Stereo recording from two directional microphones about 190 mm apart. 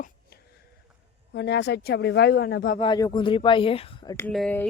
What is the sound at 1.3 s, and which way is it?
A woman's voice, 65° left (ahead or behind).